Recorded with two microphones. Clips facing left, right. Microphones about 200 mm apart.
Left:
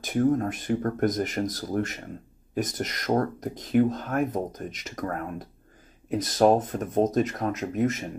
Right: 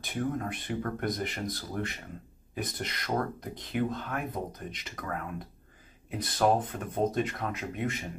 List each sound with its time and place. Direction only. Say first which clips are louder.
0.0 s speech: left 9 dB; 45° left (ahead or behind)